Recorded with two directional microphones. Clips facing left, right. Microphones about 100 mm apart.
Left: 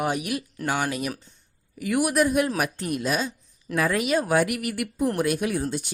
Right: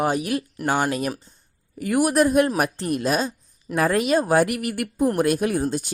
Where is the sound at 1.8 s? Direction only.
40° right (ahead or behind).